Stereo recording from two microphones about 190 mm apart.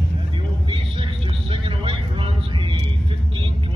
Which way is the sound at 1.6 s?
25° right (ahead or behind).